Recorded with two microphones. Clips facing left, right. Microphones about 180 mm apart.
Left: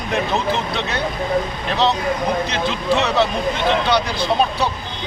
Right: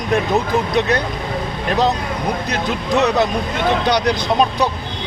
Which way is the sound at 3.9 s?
15° right (ahead or behind).